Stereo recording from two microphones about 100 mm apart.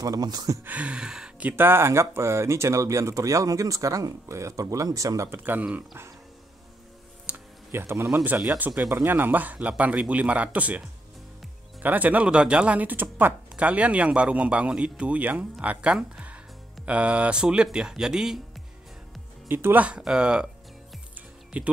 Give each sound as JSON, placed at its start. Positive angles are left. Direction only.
{"t": 0.0, "sound": "speech", "side_deg": -40}
{"t": 0.7, "sound": "speech", "side_deg": -15}
{"t": 1.6, "sound": "speech", "side_deg": -25}
{"t": 7.2, "sound": "a sound", "side_deg": -20}
{"t": 8.2, "sound": "speech", "side_deg": -20}
{"t": 11.8, "sound": "speech", "side_deg": -15}
{"t": 19.4, "sound": "speech", "side_deg": -20}
{"t": 21.5, "sound": "speech", "side_deg": -15}